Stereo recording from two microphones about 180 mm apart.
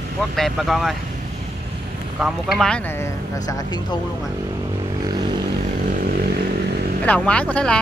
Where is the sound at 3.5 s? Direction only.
20° left (ahead or behind).